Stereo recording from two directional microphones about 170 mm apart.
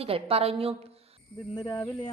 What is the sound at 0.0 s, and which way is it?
A woman's voice, 35° right (ahead or behind).